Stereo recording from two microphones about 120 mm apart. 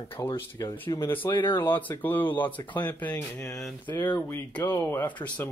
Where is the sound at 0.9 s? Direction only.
20° left (ahead or behind).